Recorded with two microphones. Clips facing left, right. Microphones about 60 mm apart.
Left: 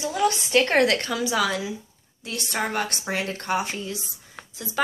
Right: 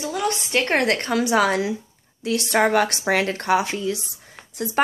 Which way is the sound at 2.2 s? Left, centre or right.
Right.